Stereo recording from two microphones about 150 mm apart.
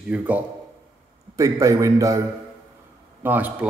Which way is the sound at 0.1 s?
10° right (ahead or behind).